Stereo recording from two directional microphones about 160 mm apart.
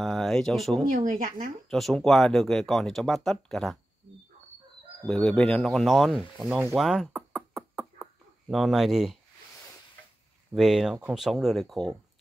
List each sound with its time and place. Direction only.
0.0 s speech: centre (ahead or behind)
0.8 s speech: 55° right (ahead or behind)
1.7 s speech: centre (ahead or behind)
5.0 s speech: centre (ahead or behind)
6.7 s a sound: centre (ahead or behind)
10.5 s speech: centre (ahead or behind)